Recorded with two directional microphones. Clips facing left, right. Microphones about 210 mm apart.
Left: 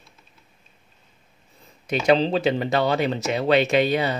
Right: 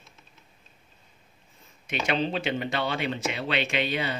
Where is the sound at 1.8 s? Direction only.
35° left (ahead or behind).